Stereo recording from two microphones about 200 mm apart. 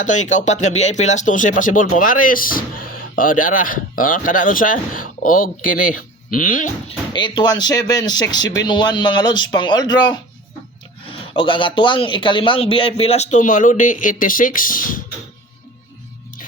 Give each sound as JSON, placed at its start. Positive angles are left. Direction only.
{"t": 0.0, "sound": "a man's voice", "side_deg": 35}
{"t": 7.1, "sound": "a man's voice", "side_deg": 20}